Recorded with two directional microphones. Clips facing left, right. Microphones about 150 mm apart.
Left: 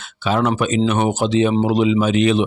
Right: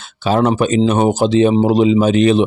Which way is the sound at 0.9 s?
35° right (ahead or behind).